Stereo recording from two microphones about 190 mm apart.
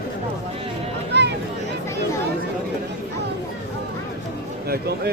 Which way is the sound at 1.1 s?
65° right (ahead or behind).